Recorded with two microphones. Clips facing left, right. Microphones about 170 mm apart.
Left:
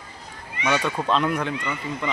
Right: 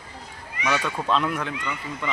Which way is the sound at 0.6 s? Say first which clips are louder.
Left 2 dB; 25° left (ahead or behind).